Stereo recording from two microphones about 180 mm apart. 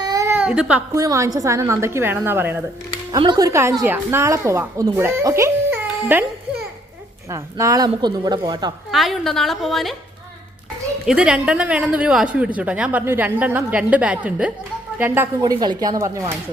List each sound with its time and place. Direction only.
0.0 s baby cry: 20° right (ahead or behind)
0.9 s speech: 15° right (ahead or behind)
3.1 s speech: 25° right (ahead or behind)
7.3 s a woman's voice: 20° right (ahead or behind)
8.9 s speech: centre (ahead or behind)
11.0 s speech: 5° right (ahead or behind)